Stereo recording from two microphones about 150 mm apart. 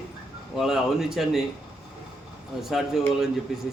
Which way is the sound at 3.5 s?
Centre (ahead or behind).